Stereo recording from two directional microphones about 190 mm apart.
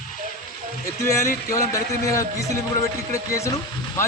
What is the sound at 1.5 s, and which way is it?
Speech, 15° left (ahead or behind).